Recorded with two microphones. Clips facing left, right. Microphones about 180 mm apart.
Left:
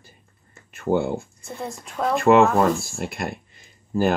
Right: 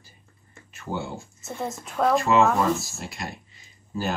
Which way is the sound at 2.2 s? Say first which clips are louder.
Left 9 dB; 60° left (ahead or behind).